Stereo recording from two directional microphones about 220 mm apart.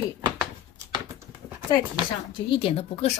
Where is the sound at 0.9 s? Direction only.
15° right (ahead or behind).